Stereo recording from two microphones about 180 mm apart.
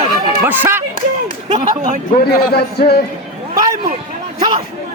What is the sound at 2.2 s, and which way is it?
Speech, 60° left (ahead or behind).